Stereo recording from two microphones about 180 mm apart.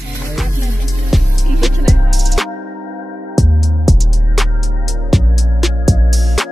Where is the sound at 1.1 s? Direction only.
Centre (ahead or behind).